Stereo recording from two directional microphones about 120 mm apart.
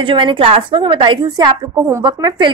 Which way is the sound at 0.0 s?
45° right (ahead or behind).